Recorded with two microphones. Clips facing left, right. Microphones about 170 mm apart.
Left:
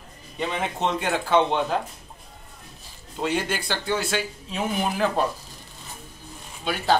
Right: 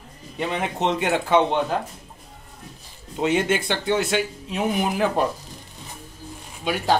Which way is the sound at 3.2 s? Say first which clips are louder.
Right 5 dB; 20° right (ahead or behind).